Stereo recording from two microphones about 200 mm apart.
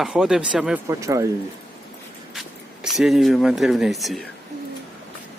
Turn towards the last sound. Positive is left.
turn(degrees=0)  # may be behind; listen again after turning